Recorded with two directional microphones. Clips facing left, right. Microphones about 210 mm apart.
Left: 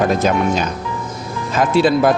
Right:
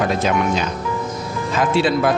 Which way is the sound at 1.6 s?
40° left (ahead or behind).